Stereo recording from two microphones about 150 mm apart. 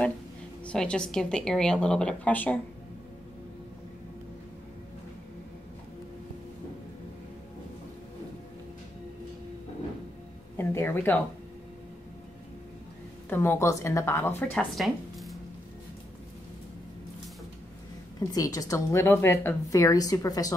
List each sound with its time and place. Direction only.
0.7 s a woman's voice: 5° left (ahead or behind)
10.5 s a sound: 15° left (ahead or behind)
13.3 s speech: 15° left (ahead or behind)
18.3 s a woman's voice: 25° left (ahead or behind)